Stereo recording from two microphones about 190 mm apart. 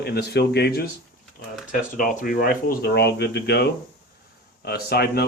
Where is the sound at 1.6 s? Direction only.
45° left (ahead or behind).